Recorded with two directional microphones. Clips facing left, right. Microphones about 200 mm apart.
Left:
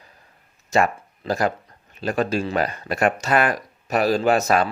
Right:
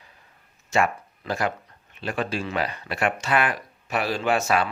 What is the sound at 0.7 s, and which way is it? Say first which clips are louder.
Speech: left 3 dB; 40° left (ahead or behind).